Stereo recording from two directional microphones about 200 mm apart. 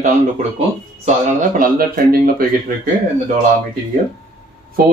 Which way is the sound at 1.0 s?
40° right (ahead or behind).